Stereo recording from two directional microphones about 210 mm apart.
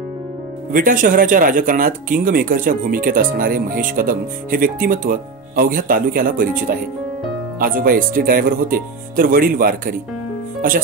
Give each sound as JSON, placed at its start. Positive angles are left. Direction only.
{"t": 0.7, "sound": "speech", "side_deg": -40}